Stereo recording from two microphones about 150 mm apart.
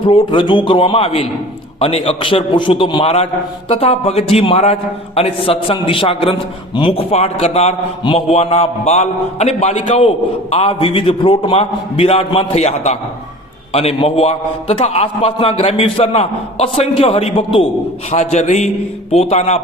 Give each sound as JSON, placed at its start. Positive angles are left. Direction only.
{"t": 0.0, "sound": "a man's voice", "side_deg": 35}